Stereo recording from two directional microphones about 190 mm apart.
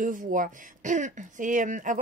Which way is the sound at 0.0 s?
45° right (ahead or behind).